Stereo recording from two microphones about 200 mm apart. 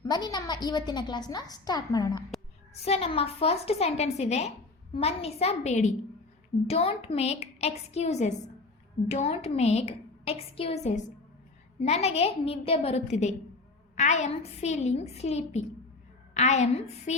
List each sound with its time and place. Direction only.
0.0 s a woman's voice: 20° left (ahead or behind)
2.8 s a woman's voice: 30° left (ahead or behind)